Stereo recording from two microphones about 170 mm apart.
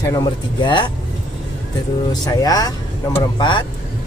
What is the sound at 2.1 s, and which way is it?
Speech, 20° left (ahead or behind).